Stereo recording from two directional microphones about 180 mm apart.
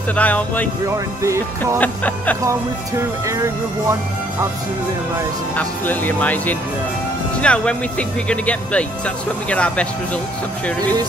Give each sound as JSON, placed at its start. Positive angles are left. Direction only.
{"t": 0.1, "sound": "speech", "side_deg": 10}
{"t": 0.8, "sound": "speech", "side_deg": -15}
{"t": 1.8, "sound": "speech", "side_deg": 10}
{"t": 5.6, "sound": "speech", "side_deg": 10}